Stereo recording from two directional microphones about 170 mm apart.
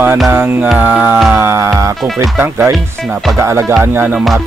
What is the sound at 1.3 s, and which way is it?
Speech, 15° right (ahead or behind).